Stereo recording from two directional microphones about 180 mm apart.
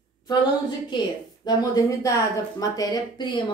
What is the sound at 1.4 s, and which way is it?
A woman's voice, 20° left (ahead or behind).